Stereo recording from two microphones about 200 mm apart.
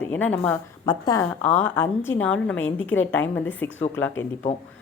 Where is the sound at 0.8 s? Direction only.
20° left (ahead or behind).